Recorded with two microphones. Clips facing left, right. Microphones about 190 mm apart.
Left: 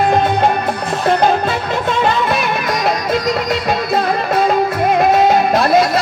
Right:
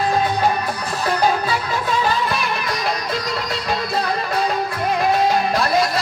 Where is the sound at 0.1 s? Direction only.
65° left (ahead or behind).